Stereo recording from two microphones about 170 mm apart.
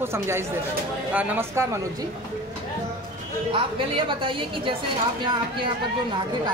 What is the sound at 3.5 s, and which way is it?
A woman's voice, 30° right (ahead or behind).